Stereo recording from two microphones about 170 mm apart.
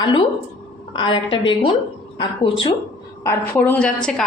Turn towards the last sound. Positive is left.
turn(degrees=5)  # may be behind; listen again after turning